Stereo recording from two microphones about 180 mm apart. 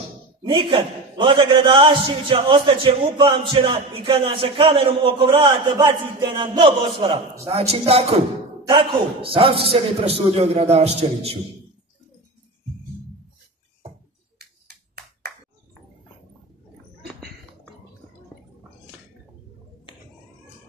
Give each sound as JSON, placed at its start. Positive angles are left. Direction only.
{"t": 0.4, "sound": "a man's voice", "side_deg": -30}